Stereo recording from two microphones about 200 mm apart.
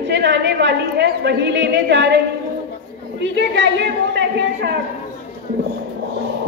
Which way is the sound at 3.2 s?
65° right (ahead or behind).